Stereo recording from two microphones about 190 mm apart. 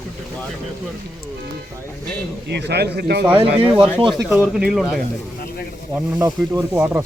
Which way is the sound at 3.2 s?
25° right (ahead or behind).